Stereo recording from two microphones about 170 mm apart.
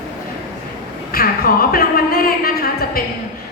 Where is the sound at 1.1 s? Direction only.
60° left (ahead or behind).